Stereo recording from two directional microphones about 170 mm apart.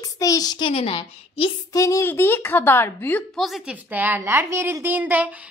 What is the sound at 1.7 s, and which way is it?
A woman's voice, 20° left (ahead or behind).